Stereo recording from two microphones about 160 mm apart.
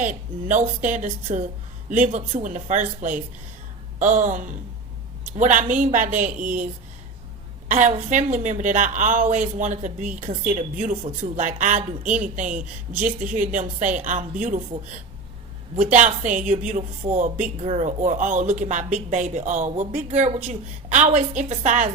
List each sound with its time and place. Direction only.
0.0 s a woman's voice: 50° right (ahead or behind)
7.7 s a woman's voice: 50° right (ahead or behind)
15.8 s a woman's voice: 50° right (ahead or behind)